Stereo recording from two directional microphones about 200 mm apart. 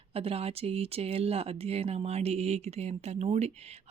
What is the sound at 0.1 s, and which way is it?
Speech, 30° right (ahead or behind).